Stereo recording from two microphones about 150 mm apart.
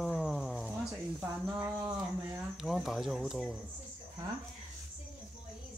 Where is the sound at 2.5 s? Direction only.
Centre (ahead or behind).